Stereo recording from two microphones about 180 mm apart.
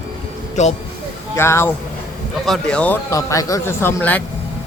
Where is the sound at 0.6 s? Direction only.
40° left (ahead or behind).